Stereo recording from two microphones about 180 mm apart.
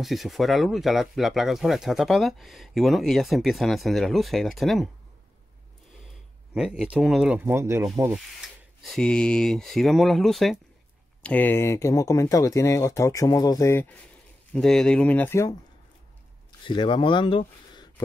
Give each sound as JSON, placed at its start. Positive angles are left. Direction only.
{"t": 0.0, "sound": "speech", "side_deg": 0}
{"t": 6.5, "sound": "speech", "side_deg": -5}
{"t": 8.1, "sound": "speech", "side_deg": 0}
{"t": 14.5, "sound": "speech", "side_deg": 5}
{"t": 16.6, "sound": "speech", "side_deg": 25}